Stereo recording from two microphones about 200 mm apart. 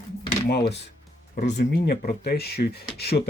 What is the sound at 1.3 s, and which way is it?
Speech, 40° left (ahead or behind).